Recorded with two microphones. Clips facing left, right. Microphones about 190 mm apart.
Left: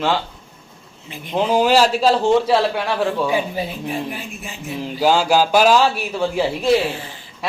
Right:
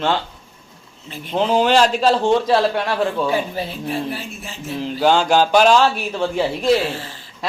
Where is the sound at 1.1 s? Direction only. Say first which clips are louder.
Even; 15° left (ahead or behind).